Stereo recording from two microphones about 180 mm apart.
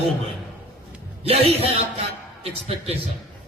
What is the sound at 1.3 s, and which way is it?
A man's voice, 35° right (ahead or behind).